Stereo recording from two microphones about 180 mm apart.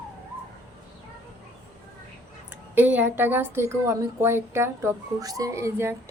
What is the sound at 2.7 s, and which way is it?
Speech, 10° right (ahead or behind).